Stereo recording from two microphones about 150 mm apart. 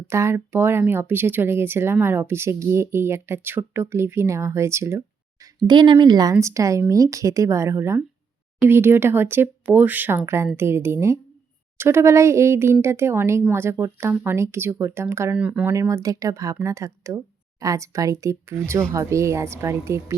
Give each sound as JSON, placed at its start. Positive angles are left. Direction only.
{"t": 0.1, "sound": "speech", "side_deg": -15}
{"t": 5.6, "sound": "speech", "side_deg": -30}
{"t": 15.7, "sound": "speech", "side_deg": -20}